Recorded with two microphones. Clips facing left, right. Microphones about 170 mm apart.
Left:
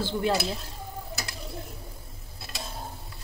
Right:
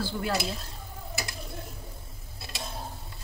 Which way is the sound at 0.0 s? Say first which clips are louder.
Left 4 dB; 25° left (ahead or behind).